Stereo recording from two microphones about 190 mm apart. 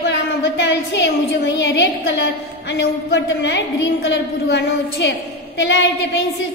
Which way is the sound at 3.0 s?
65° left (ahead or behind).